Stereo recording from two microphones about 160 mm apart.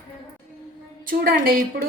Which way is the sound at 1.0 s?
65° right (ahead or behind).